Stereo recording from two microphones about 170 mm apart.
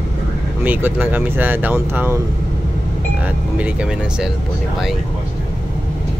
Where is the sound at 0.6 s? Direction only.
10° right (ahead or behind).